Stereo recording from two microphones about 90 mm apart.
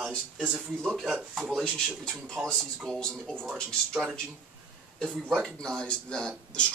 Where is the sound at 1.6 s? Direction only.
10° left (ahead or behind).